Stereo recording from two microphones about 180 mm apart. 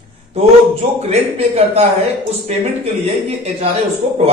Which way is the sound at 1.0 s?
35° right (ahead or behind).